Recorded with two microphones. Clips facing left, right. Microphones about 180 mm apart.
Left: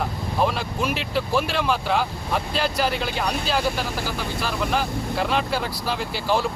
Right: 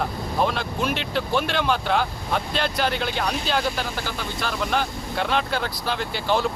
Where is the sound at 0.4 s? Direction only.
5° left (ahead or behind).